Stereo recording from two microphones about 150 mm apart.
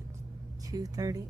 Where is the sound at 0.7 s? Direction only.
25° right (ahead or behind).